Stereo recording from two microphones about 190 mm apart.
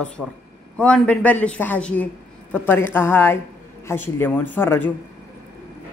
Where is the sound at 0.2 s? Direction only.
Centre (ahead or behind).